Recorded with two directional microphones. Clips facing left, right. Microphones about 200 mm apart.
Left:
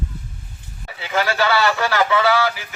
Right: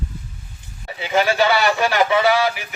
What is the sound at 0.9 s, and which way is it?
Speech, 20° right (ahead or behind).